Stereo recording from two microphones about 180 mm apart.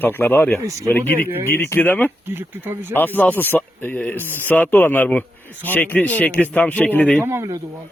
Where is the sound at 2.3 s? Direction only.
10° right (ahead or behind).